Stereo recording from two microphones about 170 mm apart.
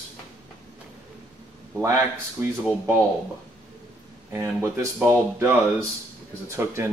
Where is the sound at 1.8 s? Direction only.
15° right (ahead or behind).